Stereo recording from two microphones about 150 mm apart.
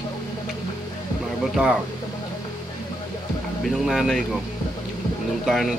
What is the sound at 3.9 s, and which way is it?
Speech, centre (ahead or behind).